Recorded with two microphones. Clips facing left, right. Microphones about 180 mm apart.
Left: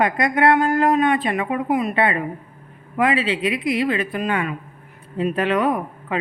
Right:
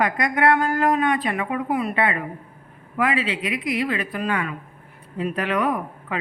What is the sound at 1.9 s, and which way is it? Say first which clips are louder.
Speech: left 3 dB; 30° left (ahead or behind).